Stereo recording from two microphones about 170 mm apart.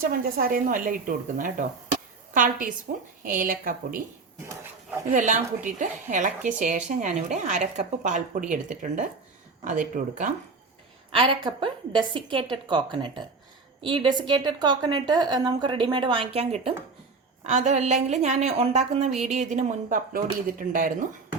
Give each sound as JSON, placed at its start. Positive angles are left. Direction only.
{"t": 0.0, "sound": "a woman's voice", "side_deg": -60}
{"t": 5.1, "sound": "a woman's voice", "side_deg": -50}
{"t": 11.1, "sound": "a woman's voice", "side_deg": -30}